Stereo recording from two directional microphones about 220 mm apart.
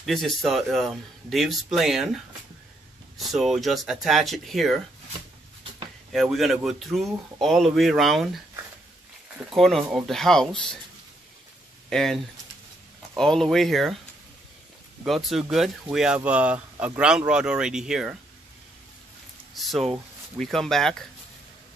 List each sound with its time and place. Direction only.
0.0 s speech: centre (ahead or behind)
6.1 s speech: centre (ahead or behind)
9.5 s speech: centre (ahead or behind)
11.9 s speech: centre (ahead or behind)
15.0 s speech: centre (ahead or behind)
19.5 s a sound: centre (ahead or behind)
19.9 s speech: centre (ahead or behind)